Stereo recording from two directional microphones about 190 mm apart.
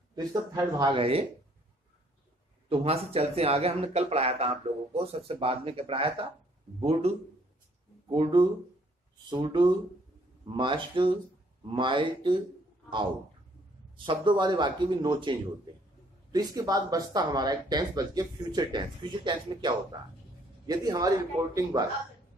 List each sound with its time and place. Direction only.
0.1 s speech: 20° right (ahead or behind)
2.7 s a man's voice: 30° right (ahead or behind)
13.9 s speech: 25° right (ahead or behind)